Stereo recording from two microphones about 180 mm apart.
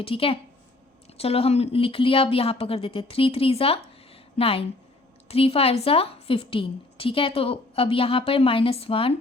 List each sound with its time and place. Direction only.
0.0 s a woman's voice: 30° left (ahead or behind)
4.1 s a sound: 30° left (ahead or behind)
5.3 s a woman's voice: 35° left (ahead or behind)